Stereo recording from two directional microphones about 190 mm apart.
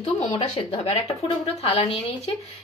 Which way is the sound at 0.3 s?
30° left (ahead or behind).